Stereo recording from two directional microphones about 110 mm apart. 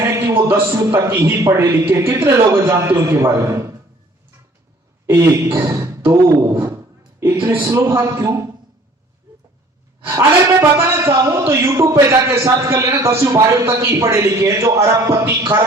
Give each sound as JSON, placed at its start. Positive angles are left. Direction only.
{"t": 0.0, "sound": "a sound", "side_deg": -25}
{"t": 0.9, "sound": "a man's voice", "side_deg": -25}
{"t": 5.0, "sound": "a man's voice", "side_deg": -25}
{"t": 10.1, "sound": "a man's voice", "side_deg": -30}